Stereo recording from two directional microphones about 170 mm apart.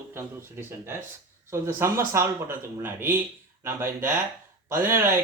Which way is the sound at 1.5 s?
15° right (ahead or behind).